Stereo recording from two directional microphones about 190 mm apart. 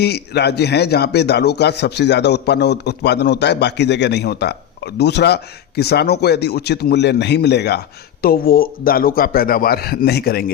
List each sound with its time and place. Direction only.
0.0 s speech: 60° left (ahead or behind)